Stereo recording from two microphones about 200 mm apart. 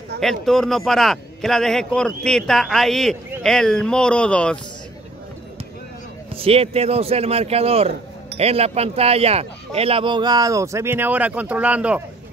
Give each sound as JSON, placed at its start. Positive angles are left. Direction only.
{"t": 0.2, "sound": "a man's voice", "side_deg": 0}
{"t": 6.3, "sound": "speech", "side_deg": -30}